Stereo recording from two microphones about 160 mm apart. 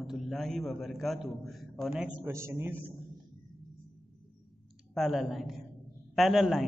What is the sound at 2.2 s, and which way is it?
Speech, 15° right (ahead or behind).